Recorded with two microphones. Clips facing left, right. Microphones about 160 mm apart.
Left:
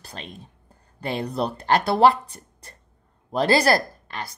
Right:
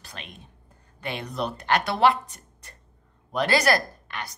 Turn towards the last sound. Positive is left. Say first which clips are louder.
# left 2 dB
turn(degrees=30)  # may be behind; listen again after turning